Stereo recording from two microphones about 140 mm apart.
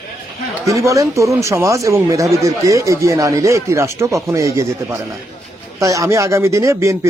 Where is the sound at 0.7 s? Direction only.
20° right (ahead or behind).